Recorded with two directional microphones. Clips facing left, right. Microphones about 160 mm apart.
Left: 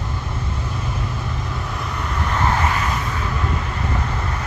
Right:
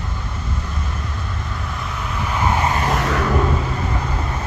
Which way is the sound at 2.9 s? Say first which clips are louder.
Right 6 dB; 80° right.